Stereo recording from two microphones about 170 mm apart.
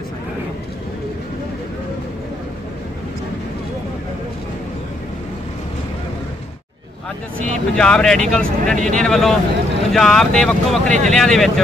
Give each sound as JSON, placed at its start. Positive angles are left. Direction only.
{"t": 7.3, "sound": "speech", "side_deg": 5}
{"t": 8.7, "sound": "speech", "side_deg": -50}
{"t": 9.0, "sound": "speech", "side_deg": 5}